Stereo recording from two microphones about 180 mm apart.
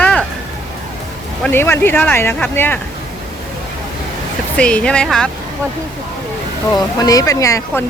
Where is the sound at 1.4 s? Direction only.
10° left (ahead or behind).